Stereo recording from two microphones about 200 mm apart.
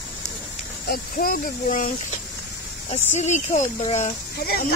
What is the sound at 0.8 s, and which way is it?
Speech, 45° left (ahead or behind).